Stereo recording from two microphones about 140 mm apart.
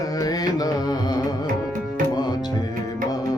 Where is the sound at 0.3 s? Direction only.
25° left (ahead or behind).